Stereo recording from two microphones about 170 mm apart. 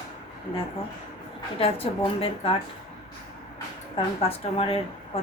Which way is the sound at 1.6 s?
35° left (ahead or behind).